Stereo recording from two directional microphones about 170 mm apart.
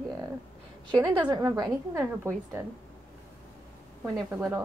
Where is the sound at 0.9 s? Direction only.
25° right (ahead or behind).